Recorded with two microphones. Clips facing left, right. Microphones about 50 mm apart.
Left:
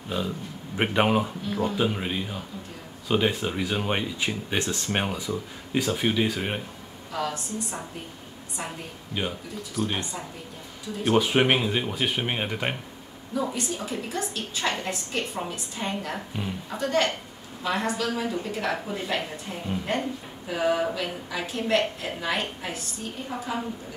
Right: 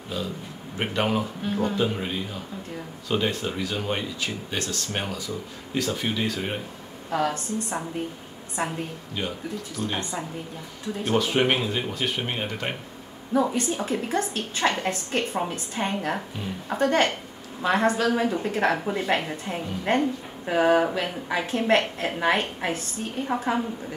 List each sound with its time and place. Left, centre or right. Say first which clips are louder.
0.1 s speech: left 2 dB; centre
7.1 s a woman's voice: right 5 dB; right
9.2 s speech: left 1 dB; centre
11.1 s speech: left 1 dB; centre
13.3 s a woman's voice: right 5 dB; right